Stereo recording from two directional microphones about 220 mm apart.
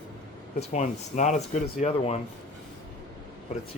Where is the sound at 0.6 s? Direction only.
30° left (ahead or behind).